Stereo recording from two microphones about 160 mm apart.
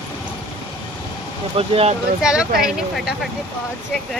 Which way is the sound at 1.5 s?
40° right (ahead or behind).